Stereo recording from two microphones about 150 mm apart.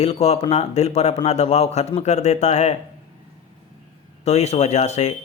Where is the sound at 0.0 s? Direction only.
45° left (ahead or behind).